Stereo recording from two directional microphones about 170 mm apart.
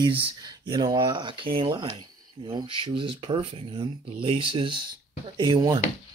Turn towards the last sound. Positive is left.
turn(degrees=-25)  # may be behind; listen again after turning